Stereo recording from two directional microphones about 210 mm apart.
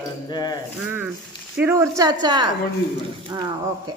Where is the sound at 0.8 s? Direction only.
10° right (ahead or behind).